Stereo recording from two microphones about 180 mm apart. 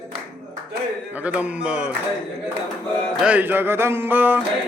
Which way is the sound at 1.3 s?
5° right (ahead or behind).